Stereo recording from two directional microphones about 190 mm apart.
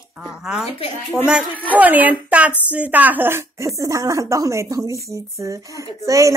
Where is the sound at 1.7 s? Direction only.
10° right (ahead or behind).